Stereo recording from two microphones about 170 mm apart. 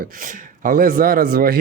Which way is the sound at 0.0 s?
55° right (ahead or behind).